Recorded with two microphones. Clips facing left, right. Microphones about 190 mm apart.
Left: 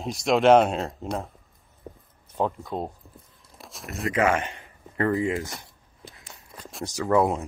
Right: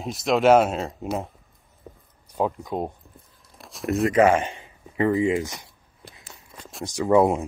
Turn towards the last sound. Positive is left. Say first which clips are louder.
# right 4 dB
turn(degrees=-15)  # may be behind; listen again after turning